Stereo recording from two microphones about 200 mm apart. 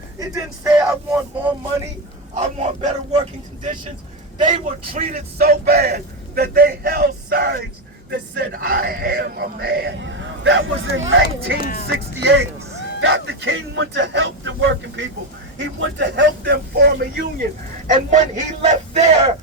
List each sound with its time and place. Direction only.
0.2 s speech: 15° right (ahead or behind)
0.8 s speech: 5° right (ahead or behind)
2.3 s a man's voice: 35° right (ahead or behind)
4.9 s a man's voice: 40° right (ahead or behind); by 11.5 s 70° right (ahead or behind)
11.6 s speech: 45° left (ahead or behind)
12.2 s speech: 65° right (ahead or behind)
18.1 s speech: 35° right (ahead or behind)